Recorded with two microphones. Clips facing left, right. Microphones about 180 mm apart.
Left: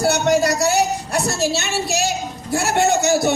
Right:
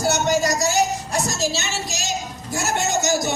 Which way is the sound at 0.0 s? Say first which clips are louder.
Left 3 dB; 65° left (ahead or behind).